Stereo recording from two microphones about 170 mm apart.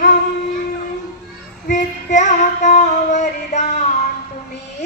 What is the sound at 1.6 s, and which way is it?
Female singing, 50° left (ahead or behind).